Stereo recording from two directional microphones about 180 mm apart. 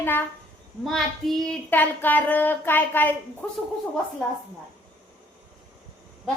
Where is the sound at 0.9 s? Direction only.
Centre (ahead or behind).